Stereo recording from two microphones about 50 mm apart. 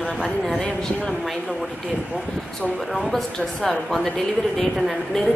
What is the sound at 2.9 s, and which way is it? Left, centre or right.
A woman's voice, centre.